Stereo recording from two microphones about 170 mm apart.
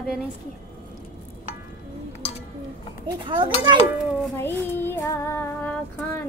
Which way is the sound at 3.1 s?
30° right (ahead or behind).